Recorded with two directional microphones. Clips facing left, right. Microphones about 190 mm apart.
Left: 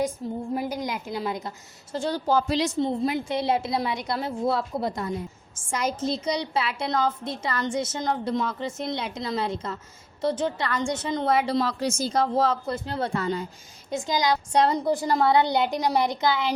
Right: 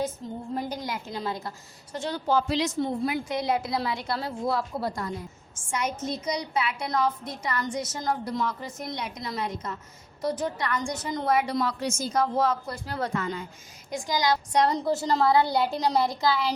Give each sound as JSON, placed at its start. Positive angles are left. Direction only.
{"t": 0.5, "sound": "a woman's voice", "side_deg": 10}
{"t": 2.0, "sound": "a woman's voice", "side_deg": 35}
{"t": 2.7, "sound": "a woman's voice", "side_deg": 25}
{"t": 5.7, "sound": "a woman's voice", "side_deg": 35}
{"t": 13.9, "sound": "a woman's voice", "side_deg": 20}